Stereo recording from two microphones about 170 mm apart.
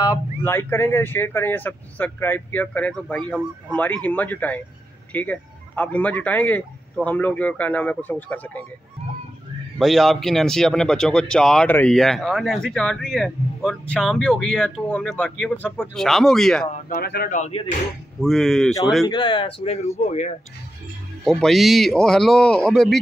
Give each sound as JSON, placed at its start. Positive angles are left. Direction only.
{"t": 0.0, "sound": "speech", "side_deg": 15}
{"t": 9.8, "sound": "speech", "side_deg": 0}
{"t": 16.9, "sound": "speech", "side_deg": 65}
{"t": 17.4, "sound": "speech", "side_deg": 40}
{"t": 18.2, "sound": "speech", "side_deg": 0}
{"t": 19.0, "sound": "speech", "side_deg": 30}
{"t": 21.2, "sound": "speech", "side_deg": 0}